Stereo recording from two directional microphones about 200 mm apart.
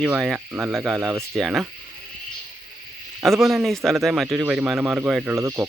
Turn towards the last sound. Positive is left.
turn(degrees=-15)  # may be behind; listen again after turning